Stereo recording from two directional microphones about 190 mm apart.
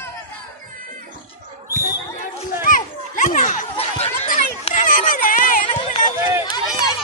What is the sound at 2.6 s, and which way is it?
Children playing, 45° left (ahead or behind).